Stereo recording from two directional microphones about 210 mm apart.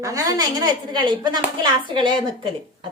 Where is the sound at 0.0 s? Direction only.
15° right (ahead or behind).